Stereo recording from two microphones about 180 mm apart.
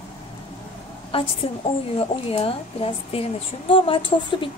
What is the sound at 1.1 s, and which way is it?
A woman's voice, 30° left (ahead or behind).